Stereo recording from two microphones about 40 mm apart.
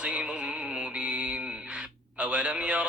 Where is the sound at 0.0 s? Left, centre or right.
Right.